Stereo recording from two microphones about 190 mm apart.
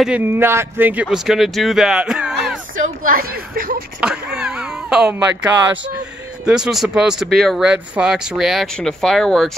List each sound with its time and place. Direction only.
0.0 s speech: 10° right (ahead or behind)
3.0 s speech: 50° right (ahead or behind)
4.0 s speech: 5° right (ahead or behind)
6.4 s speech: 5° right (ahead or behind)